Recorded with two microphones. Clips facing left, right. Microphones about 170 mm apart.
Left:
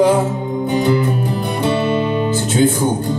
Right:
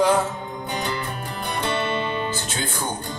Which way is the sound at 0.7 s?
10° left (ahead or behind).